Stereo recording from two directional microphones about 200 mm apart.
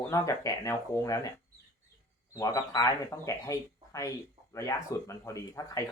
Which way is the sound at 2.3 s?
15° left (ahead or behind).